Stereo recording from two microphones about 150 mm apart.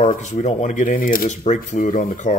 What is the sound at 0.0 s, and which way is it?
Speech, 55° left (ahead or behind).